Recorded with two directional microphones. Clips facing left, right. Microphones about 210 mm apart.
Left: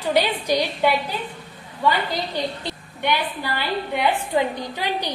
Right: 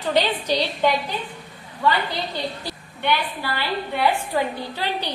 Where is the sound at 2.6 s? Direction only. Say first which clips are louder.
Left 1 dB; 15° left (ahead or behind).